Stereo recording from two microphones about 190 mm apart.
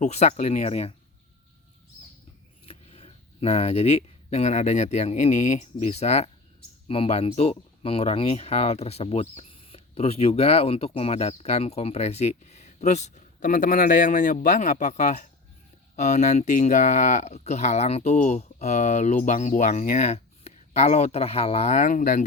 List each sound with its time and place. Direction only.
0.0 s speech: 35° left (ahead or behind)
2.6 s speech: 30° left (ahead or behind)